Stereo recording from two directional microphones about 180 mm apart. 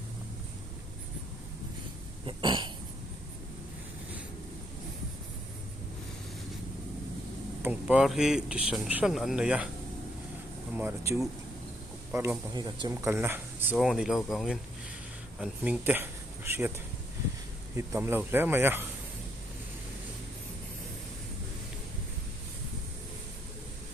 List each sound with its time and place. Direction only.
2.2 s throat clearing: 25° right (ahead or behind)
7.6 s speech: 5° right (ahead or behind)
10.8 s speech: 15° right (ahead or behind)
13.7 s speech: centre (ahead or behind)
17.7 s speech: 15° right (ahead or behind)